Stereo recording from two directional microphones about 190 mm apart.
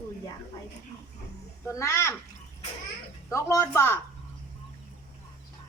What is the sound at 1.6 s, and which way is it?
Speech, 15° left (ahead or behind).